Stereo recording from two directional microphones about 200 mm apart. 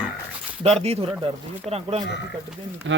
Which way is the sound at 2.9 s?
70° right (ahead or behind).